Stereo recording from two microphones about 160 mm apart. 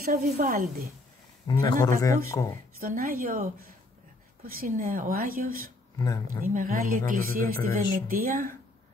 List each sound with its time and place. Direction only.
0.0 s speech: 60° right (ahead or behind)
1.5 s speech: 25° left (ahead or behind)
2.8 s speech: 60° right (ahead or behind)
5.9 s speech: 20° left (ahead or behind)
6.4 s speech: 60° right (ahead or behind)